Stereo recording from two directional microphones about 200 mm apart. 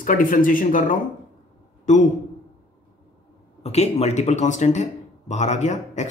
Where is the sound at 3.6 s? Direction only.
35° left (ahead or behind).